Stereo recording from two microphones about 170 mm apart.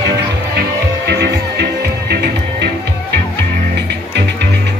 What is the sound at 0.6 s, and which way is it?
Music, 75° right (ahead or behind).